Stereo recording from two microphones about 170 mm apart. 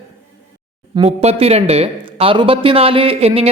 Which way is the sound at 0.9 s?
35° right (ahead or behind).